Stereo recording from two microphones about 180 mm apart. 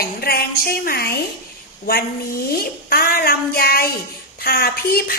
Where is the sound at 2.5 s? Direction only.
55° left (ahead or behind).